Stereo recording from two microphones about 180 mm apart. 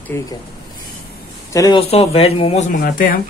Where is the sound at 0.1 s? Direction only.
15° left (ahead or behind).